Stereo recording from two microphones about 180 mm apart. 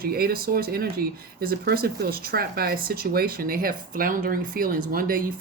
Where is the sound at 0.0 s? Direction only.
55° right (ahead or behind).